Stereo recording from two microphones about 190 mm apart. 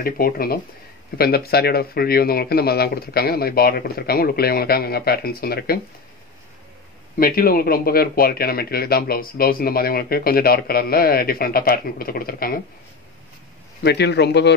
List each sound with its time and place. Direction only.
0.0 s speech: 50° left (ahead or behind)
7.2 s speech: 50° left (ahead or behind)
13.8 s speech: 60° left (ahead or behind)